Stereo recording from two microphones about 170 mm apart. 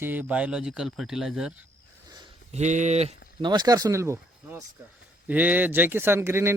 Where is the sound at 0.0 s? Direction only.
10° right (ahead or behind).